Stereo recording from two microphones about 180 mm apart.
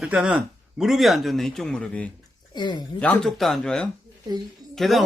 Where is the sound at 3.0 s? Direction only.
5° left (ahead or behind).